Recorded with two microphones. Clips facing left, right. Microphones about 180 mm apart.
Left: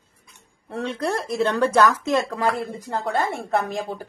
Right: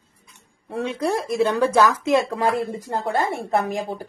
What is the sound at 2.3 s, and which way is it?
Speech, 20° right (ahead or behind).